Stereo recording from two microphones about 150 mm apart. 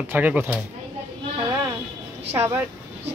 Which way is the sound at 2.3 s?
15° right (ahead or behind).